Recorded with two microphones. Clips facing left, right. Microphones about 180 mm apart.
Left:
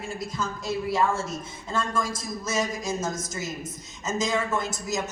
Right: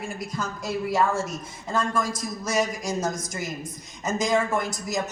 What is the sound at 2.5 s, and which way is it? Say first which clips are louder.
Speech: right 2 dB; 15° right (ahead or behind).